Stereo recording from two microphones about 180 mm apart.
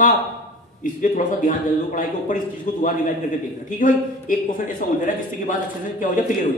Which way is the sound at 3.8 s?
45° left (ahead or behind).